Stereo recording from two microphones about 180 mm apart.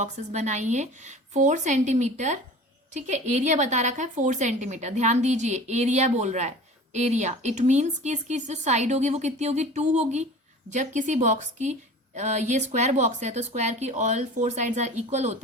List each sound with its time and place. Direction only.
0.0 s a woman's voice: 40° right (ahead or behind)